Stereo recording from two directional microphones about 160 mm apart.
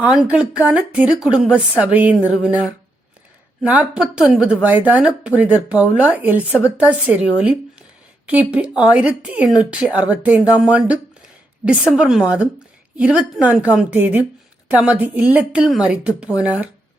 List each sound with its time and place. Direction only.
0.2 s a woman's voice: 5° right (ahead or behind)
6.5 s speech: 15° left (ahead or behind)
6.8 s a woman's voice: 10° right (ahead or behind)